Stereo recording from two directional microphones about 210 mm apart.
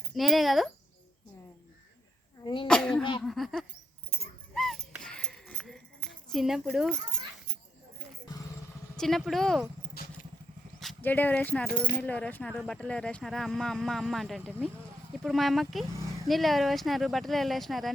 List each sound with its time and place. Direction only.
0.1 s speech: centre (ahead or behind)
2.4 s speech: 25° left (ahead or behind)
2.6 s speech: 5° left (ahead or behind)
4.5 s a sound: centre (ahead or behind)
9.0 s speech: centre (ahead or behind)
9.9 s vehicle: 45° left (ahead or behind)
10.8 s speech: 5° left (ahead or behind)